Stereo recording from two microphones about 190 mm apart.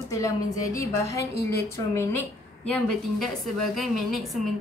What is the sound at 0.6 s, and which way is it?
A woman's voice, 15° left (ahead or behind).